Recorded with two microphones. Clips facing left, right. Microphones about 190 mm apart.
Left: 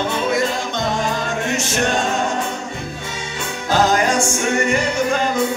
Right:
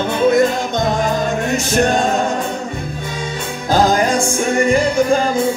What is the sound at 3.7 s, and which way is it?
Music, 35° right (ahead or behind).